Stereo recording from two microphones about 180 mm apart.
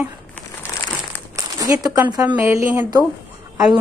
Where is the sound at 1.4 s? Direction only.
20° right (ahead or behind).